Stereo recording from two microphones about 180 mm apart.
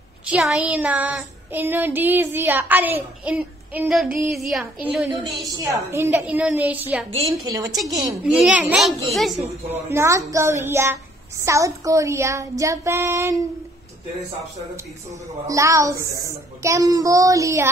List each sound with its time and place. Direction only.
0.3 s child singing: 5° right (ahead or behind)
5.1 s child singing: 25° right (ahead or behind); by 6.8 s 10° right (ahead or behind)
7.2 s a woman's voice: 20° right (ahead or behind)
8.2 s child singing: 5° right (ahead or behind)
9.4 s child singing: 10° right (ahead or behind)
15.4 s child singing: 15° right (ahead or behind)